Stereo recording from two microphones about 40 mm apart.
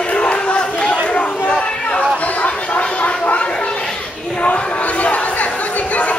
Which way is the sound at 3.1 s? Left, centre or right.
Left.